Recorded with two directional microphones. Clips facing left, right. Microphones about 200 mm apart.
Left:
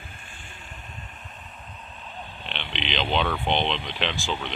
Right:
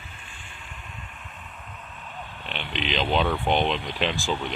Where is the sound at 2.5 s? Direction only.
5° right (ahead or behind).